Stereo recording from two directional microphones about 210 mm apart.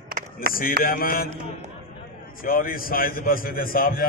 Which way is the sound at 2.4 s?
45° left (ahead or behind).